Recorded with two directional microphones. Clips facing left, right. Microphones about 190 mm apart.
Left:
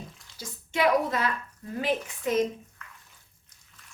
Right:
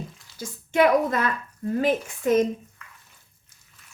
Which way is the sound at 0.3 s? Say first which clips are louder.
Right 8 dB; 50° right (ahead or behind).